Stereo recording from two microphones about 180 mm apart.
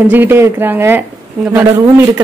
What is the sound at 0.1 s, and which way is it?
Speech, 10° right (ahead or behind).